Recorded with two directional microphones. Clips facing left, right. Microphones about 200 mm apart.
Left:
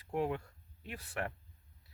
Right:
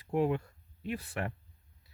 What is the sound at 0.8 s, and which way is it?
Speech, 15° right (ahead or behind).